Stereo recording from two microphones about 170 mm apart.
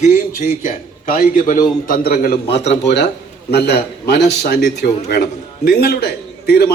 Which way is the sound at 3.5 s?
70° left (ahead or behind).